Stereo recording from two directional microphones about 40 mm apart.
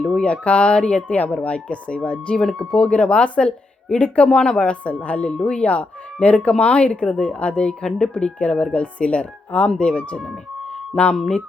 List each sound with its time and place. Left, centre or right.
0.0 s speech: left
4.3 s speech: centre
4.5 s speech: left
5.3 s speech: left